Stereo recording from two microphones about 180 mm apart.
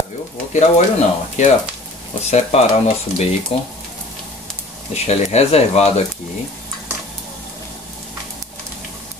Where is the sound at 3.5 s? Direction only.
30° left (ahead or behind).